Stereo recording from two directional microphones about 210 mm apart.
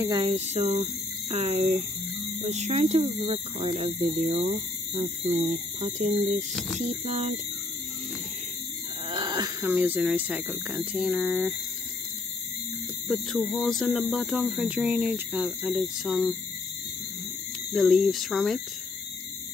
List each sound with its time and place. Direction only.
0.0 s speech: 20° right (ahead or behind)
0.3 s speech: 30° right (ahead or behind)
9.1 s a sound: 20° right (ahead or behind)
9.7 s speech: 5° right (ahead or behind)
13.1 s speech: centre (ahead or behind)
17.7 s speech: centre (ahead or behind)